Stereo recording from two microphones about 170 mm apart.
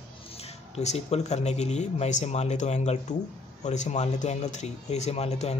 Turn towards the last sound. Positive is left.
turn(degrees=40)  # may be behind; listen again after turning